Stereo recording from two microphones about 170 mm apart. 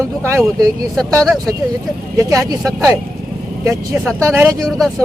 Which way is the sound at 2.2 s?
20° right (ahead or behind).